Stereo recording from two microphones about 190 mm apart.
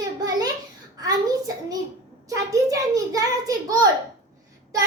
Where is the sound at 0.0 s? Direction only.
20° right (ahead or behind).